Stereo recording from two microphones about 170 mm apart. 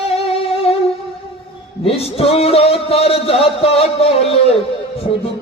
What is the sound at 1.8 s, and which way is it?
A man's voice, 35° left (ahead or behind).